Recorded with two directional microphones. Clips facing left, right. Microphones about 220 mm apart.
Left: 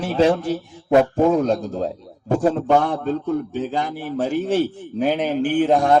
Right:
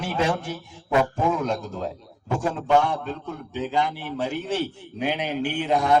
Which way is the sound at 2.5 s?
50° left (ahead or behind).